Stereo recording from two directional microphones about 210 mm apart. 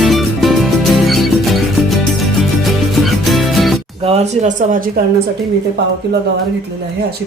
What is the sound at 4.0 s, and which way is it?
Speech, 30° right (ahead or behind).